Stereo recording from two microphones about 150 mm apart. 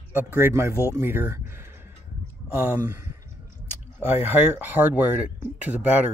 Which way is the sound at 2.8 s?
20° right (ahead or behind).